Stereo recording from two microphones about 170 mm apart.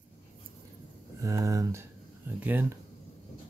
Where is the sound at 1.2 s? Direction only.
20° right (ahead or behind).